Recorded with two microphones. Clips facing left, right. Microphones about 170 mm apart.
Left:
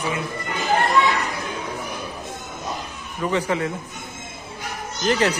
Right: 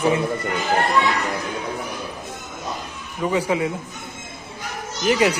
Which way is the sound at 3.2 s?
10° right (ahead or behind).